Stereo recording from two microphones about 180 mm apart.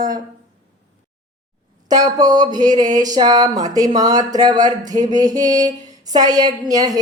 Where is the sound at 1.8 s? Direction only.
20° right (ahead or behind).